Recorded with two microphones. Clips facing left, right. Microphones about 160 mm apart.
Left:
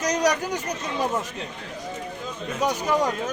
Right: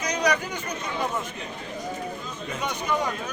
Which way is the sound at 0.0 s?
40° left (ahead or behind).